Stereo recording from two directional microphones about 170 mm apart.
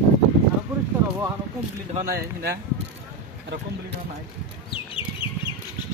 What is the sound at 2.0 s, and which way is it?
Speech, 60° right (ahead or behind).